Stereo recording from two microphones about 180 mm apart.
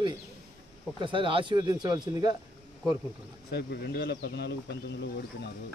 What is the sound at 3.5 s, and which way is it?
Speech, 65° left (ahead or behind).